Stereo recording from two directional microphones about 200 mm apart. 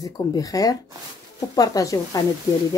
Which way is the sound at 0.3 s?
15° left (ahead or behind).